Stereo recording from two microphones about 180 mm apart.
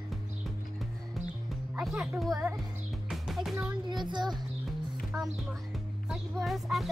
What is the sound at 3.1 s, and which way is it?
Music, centre (ahead or behind).